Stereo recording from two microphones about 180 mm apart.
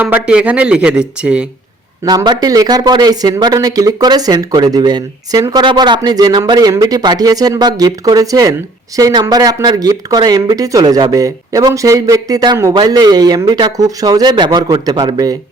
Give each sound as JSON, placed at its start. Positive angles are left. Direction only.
{"t": 0.0, "sound": "speech", "side_deg": -10}
{"t": 2.0, "sound": "speech", "side_deg": -25}